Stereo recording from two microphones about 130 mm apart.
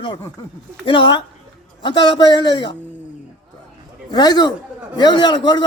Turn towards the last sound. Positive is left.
turn(degrees=35)  # may be behind; listen again after turning